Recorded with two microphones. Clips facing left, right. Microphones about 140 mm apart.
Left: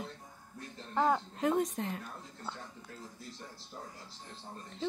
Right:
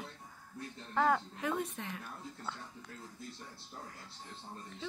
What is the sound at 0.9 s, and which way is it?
Speech, 20° left (ahead or behind).